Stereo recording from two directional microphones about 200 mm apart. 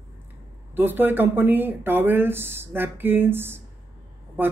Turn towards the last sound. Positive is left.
turn(degrees=-10)  # may be behind; listen again after turning